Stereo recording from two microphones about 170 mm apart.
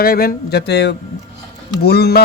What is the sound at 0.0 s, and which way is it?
Speech, 60° left (ahead or behind).